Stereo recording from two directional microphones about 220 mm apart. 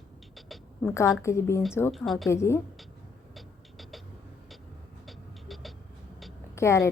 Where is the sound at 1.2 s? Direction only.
10° left (ahead or behind).